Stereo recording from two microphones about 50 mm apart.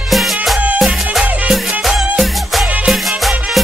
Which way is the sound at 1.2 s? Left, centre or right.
Right.